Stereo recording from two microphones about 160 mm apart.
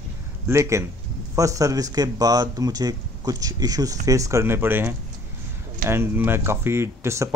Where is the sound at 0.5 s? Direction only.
15° right (ahead or behind).